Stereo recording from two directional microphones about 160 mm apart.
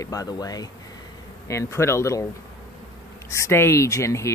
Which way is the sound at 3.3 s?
15° left (ahead or behind).